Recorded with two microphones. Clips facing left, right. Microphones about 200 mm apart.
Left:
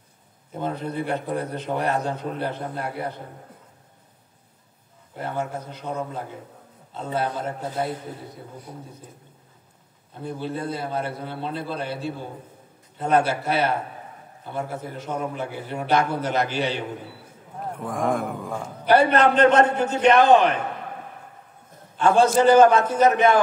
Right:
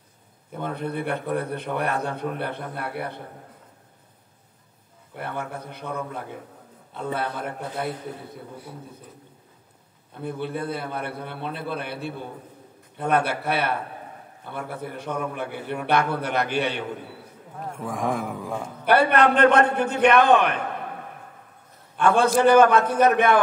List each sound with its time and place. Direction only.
0.6 s a man's voice: 55° right (ahead or behind)
5.2 s a man's voice: 60° right (ahead or behind)
7.2 s a man's voice: 60° right (ahead or behind)
10.2 s a man's voice: 60° right (ahead or behind)
17.6 s speech: centre (ahead or behind)
18.9 s a man's voice: 55° right (ahead or behind)
21.9 s a man's voice: 60° right (ahead or behind)